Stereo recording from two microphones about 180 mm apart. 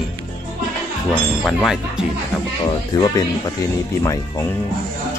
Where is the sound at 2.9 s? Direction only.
20° left (ahead or behind).